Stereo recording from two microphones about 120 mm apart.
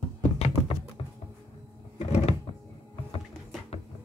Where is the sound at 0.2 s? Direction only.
55° left (ahead or behind).